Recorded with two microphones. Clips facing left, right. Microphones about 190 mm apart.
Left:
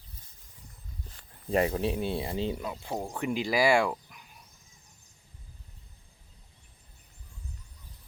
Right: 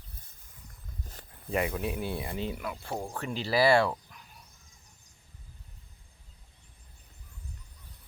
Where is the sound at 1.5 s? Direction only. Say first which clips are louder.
Left 4 dB; 35° left (ahead or behind); by 4.2 s 10° left (ahead or behind).